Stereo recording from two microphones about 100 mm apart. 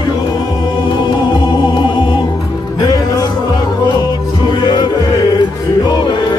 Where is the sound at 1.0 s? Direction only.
50° left (ahead or behind).